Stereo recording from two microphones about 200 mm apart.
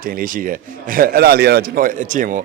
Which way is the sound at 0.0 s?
45° right (ahead or behind).